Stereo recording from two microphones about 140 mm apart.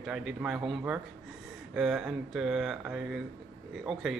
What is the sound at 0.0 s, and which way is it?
Speech, 5° right (ahead or behind).